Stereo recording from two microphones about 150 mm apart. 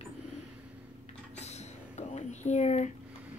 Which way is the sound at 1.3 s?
50° left (ahead or behind).